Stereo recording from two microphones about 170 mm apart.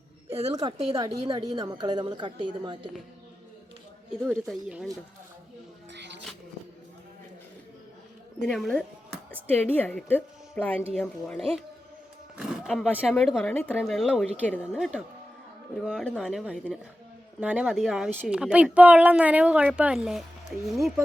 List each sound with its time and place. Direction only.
0.5 s a woman's voice: 25° right (ahead or behind)
4.3 s speech: 5° right (ahead or behind)
5.9 s a sound: 90° right
8.4 s speech: 5° left (ahead or behind)
12.4 s a sound: centre (ahead or behind)
13.1 s speech: centre (ahead or behind)
13.5 s speech: 10° left (ahead or behind)
13.7 s speech: centre (ahead or behind)